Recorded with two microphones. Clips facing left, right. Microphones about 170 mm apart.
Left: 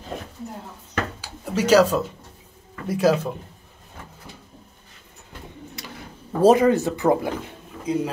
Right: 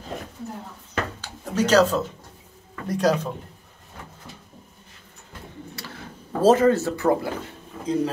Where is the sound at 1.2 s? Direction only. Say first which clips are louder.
Right 1 dB; 10° left (ahead or behind).